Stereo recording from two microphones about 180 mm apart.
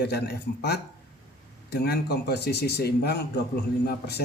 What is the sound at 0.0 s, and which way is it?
A man's voice, 65° left (ahead or behind).